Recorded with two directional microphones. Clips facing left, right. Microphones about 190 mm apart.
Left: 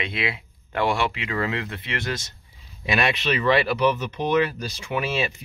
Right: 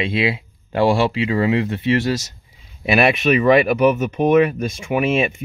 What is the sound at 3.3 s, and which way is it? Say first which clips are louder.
Speech: right 6 dB; 20° right (ahead or behind).